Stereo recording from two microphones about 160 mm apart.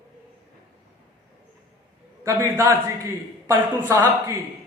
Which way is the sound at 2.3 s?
15° right (ahead or behind).